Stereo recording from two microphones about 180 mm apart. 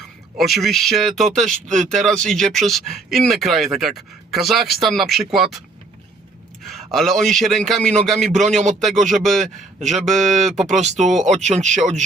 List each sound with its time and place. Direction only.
0.3 s speech: centre (ahead or behind)
6.7 s a man's voice: centre (ahead or behind)
9.8 s speech: 40° right (ahead or behind)